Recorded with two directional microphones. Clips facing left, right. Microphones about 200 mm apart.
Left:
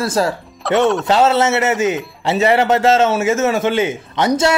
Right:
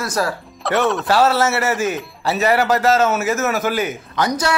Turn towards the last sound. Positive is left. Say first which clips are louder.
# left 4 dB
turn(degrees=25)  # may be behind; listen again after turning